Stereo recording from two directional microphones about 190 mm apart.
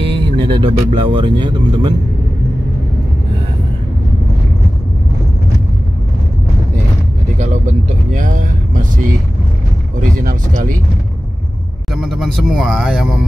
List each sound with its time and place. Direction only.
0.0 s music: 30° right (ahead or behind)
0.8 s speech: 25° right (ahead or behind)
7.3 s speech: 40° right (ahead or behind)
10.1 s speech: 45° right (ahead or behind)
11.9 s speech: centre (ahead or behind)